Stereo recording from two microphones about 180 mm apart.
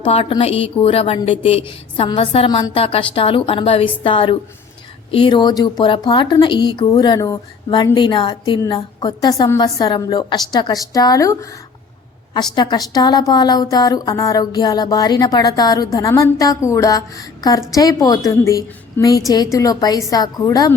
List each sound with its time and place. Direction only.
0.0 s a woman's voice: 30° left (ahead or behind)
12.5 s speech: 20° left (ahead or behind)